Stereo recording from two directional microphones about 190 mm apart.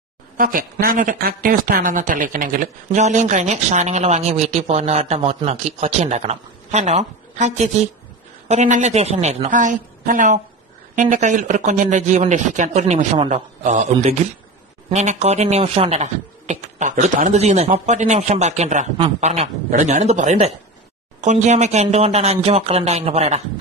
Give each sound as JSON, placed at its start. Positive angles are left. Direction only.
{"t": 0.4, "sound": "speech", "side_deg": -50}